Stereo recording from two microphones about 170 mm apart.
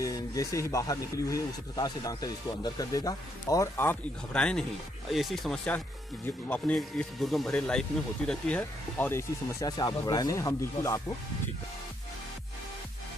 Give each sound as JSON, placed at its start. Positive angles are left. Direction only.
{"t": 0.0, "sound": "speech", "side_deg": 20}